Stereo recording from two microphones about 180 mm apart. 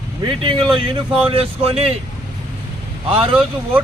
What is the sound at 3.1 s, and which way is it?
Speech, 30° right (ahead or behind).